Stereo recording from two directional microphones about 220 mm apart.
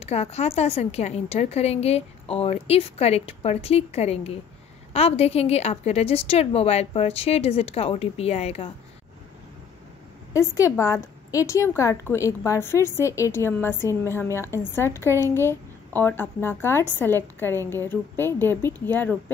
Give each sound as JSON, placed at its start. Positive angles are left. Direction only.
{"t": 0.0, "sound": "a woman's voice", "side_deg": 30}
{"t": 10.3, "sound": "a woman's voice", "side_deg": 15}